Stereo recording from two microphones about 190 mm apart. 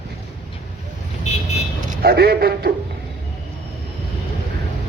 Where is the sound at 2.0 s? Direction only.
55° right (ahead or behind).